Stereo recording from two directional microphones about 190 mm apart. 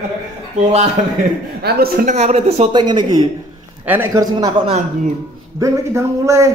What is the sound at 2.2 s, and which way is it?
Speech, 35° right (ahead or behind).